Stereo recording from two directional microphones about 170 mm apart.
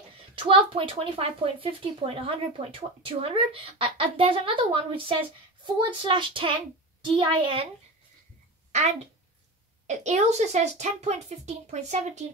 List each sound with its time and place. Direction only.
0.4 s speech: 30° right (ahead or behind)
9.8 s speech: 40° right (ahead or behind)